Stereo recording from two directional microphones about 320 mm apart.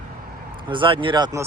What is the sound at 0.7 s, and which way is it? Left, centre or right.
Speech, centre.